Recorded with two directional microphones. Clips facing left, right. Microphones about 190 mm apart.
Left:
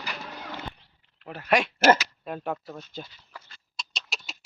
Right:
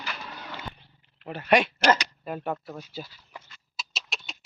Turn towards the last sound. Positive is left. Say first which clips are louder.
# even
turn(degrees=0)  # may be behind; listen again after turning